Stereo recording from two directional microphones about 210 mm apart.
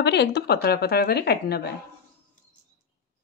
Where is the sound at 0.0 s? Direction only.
55° left (ahead or behind).